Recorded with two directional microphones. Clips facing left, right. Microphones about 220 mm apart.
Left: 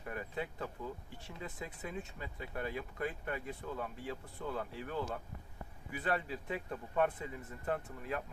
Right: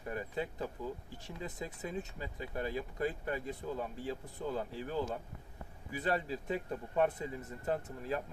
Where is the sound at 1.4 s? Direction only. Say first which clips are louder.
Right 3 dB; 20° right (ahead or behind).